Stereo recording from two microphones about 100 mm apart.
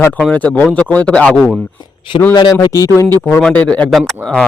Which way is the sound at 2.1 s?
55° left (ahead or behind).